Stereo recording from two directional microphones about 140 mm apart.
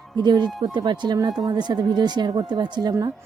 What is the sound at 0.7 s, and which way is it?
A woman's voice, 30° right (ahead or behind).